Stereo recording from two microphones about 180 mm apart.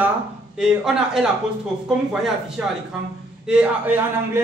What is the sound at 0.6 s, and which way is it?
A man's voice, 5° right (ahead or behind).